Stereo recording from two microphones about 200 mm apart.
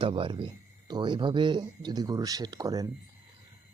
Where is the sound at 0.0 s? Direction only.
25° right (ahead or behind).